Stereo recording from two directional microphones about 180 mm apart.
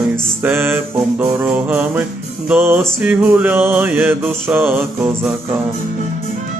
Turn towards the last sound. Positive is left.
turn(degrees=-10)  # may be behind; listen again after turning